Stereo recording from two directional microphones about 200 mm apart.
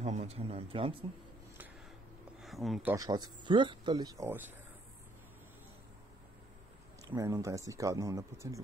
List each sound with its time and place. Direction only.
0.0 s a man's voice: 35° right (ahead or behind)
2.4 s speech: centre (ahead or behind)
2.9 s speech: 20° right (ahead or behind)
7.1 s speech: 15° right (ahead or behind)